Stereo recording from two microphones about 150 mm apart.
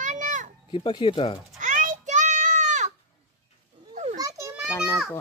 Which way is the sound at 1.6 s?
60° right (ahead or behind).